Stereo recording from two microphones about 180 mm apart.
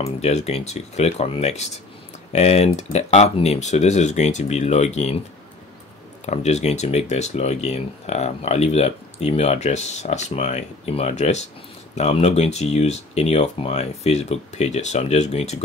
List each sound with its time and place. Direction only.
0.0 s speech: 35° left (ahead or behind)
6.2 s speech: 40° left (ahead or behind)